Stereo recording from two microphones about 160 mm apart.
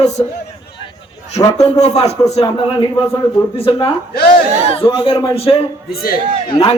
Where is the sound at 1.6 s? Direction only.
40° left (ahead or behind).